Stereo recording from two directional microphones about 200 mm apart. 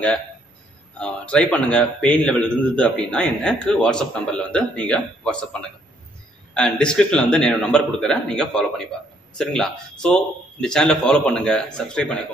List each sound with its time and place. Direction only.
0.9 s a man's voice: 5° left (ahead or behind)